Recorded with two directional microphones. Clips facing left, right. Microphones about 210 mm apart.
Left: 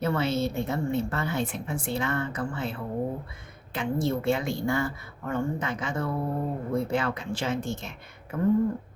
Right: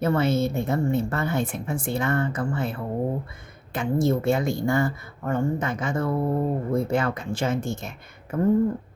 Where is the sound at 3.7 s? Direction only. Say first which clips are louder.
Right 4 dB; 45° right (ahead or behind).